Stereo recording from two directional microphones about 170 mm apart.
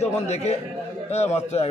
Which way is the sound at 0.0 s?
40° left (ahead or behind).